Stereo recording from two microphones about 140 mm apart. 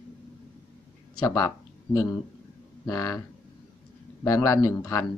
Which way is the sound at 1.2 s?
20° left (ahead or behind).